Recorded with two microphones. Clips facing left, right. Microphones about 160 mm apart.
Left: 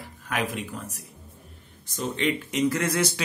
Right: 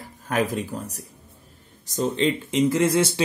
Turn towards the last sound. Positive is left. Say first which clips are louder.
# right 5 dB
turn(degrees=-25)  # may be behind; listen again after turning